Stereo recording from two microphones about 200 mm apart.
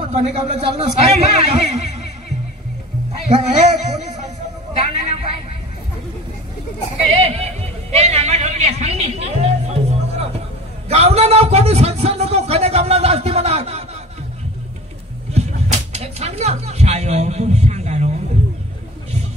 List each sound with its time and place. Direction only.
0.1 s a man's voice: 30° right (ahead or behind)
3.1 s a man's voice: 35° right (ahead or behind)
4.7 s a sound: 35° right (ahead or behind)
7.2 s a man's voice: 30° right (ahead or behind)
10.9 s a man's voice: 30° right (ahead or behind)
15.3 s music: 30° right (ahead or behind)